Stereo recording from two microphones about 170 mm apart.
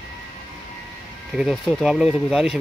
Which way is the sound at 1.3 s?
Centre (ahead or behind).